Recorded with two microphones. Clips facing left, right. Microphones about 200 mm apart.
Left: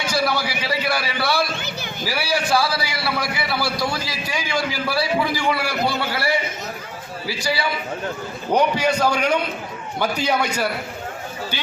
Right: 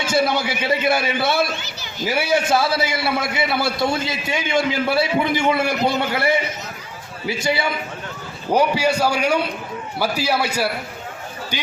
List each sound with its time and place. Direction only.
0.0 s a man's voice: 25° right (ahead or behind)
1.6 s a sound: 55° left (ahead or behind)
2.0 s a man's voice: 20° right (ahead or behind)
8.5 s a man's voice: 10° right (ahead or behind)